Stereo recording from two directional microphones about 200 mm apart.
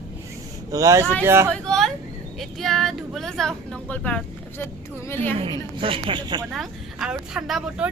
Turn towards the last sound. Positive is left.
turn(degrees=-5)  # may be behind; listen again after turning